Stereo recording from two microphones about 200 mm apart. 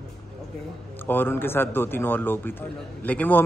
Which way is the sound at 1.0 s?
10° left (ahead or behind).